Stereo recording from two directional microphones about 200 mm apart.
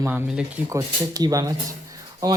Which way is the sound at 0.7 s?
15° right (ahead or behind).